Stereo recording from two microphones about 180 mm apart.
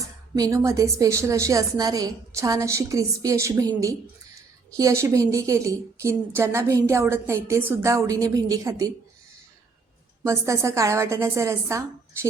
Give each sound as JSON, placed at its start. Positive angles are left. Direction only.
{"t": 0.0, "sound": "a woman's voice", "side_deg": -20}
{"t": 10.2, "sound": "a woman's voice", "side_deg": -15}